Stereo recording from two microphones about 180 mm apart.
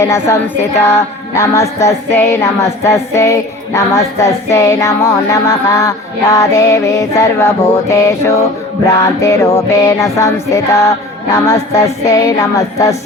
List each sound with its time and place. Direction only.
0.1 s music: 15° left (ahead or behind)